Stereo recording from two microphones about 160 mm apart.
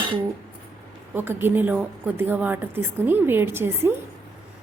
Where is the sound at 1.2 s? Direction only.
15° right (ahead or behind).